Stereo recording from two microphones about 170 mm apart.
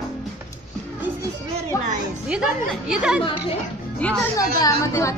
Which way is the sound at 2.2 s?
5° right (ahead or behind).